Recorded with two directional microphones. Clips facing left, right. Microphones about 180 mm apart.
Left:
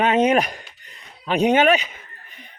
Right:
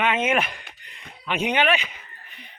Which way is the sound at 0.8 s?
40° left (ahead or behind).